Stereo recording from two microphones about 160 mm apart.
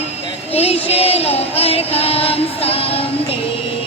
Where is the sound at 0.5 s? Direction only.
40° left (ahead or behind).